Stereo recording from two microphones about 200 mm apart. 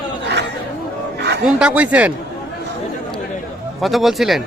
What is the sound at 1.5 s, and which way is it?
Speech, 5° right (ahead or behind).